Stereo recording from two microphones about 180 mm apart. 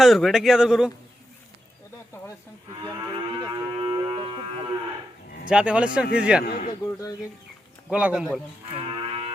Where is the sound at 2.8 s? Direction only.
20° right (ahead or behind).